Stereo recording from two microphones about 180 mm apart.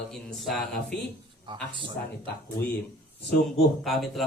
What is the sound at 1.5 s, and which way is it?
Speech, 25° right (ahead or behind).